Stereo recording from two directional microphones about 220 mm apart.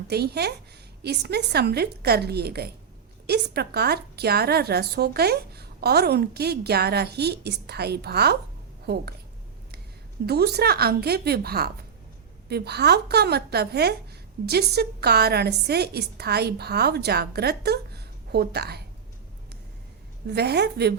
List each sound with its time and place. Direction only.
0.1 s a woman's voice: 45° right (ahead or behind)
10.2 s a woman's voice: 45° right (ahead or behind)
20.2 s a woman's voice: 50° right (ahead or behind)